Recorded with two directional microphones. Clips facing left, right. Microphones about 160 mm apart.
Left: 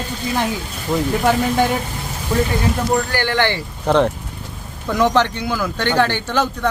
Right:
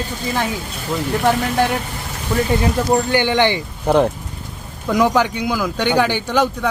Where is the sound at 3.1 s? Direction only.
15° right (ahead or behind).